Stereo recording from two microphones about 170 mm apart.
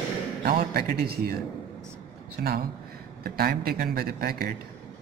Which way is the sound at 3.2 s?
65° right (ahead or behind).